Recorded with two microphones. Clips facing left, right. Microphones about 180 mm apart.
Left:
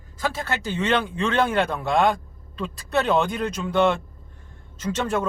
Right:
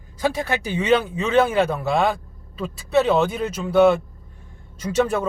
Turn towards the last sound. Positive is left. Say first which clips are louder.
# right 4 dB
turn(degrees=-10)  # may be behind; listen again after turning